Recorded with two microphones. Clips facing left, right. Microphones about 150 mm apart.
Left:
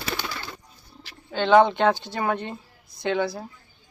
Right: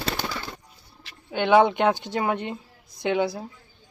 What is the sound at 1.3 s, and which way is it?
A woman's voice, 15° right (ahead or behind).